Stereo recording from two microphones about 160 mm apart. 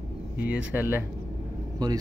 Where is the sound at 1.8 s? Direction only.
25° right (ahead or behind).